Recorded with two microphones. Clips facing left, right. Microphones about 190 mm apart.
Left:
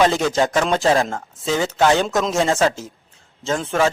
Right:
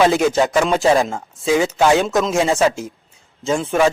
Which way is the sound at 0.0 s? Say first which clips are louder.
Right 2 dB; 5° right (ahead or behind).